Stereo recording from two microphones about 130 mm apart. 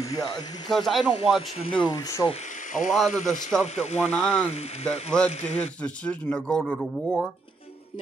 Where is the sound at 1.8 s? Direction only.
30° left (ahead or behind).